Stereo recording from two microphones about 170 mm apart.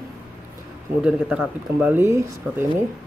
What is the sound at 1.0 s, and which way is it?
Speech, 5° right (ahead or behind).